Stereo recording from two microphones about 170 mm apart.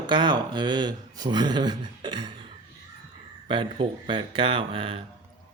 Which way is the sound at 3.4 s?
30° right (ahead or behind).